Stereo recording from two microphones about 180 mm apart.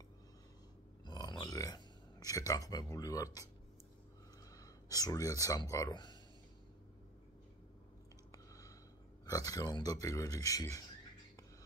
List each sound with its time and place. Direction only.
1.0 s a sound: 20° left (ahead or behind)
4.5 s speech: 20° left (ahead or behind)
9.2 s speech: 20° left (ahead or behind)